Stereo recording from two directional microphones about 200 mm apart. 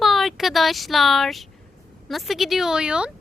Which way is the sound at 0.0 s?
Centre (ahead or behind).